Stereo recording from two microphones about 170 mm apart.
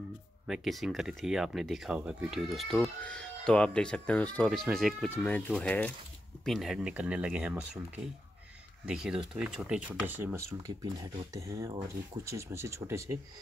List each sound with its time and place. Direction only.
0.5 s speech: centre (ahead or behind)
5.1 s speech: 10° left (ahead or behind); by 13.2 s 15° right (ahead or behind)